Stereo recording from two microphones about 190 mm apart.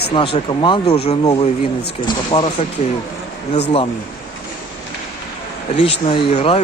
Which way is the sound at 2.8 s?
35° left (ahead or behind).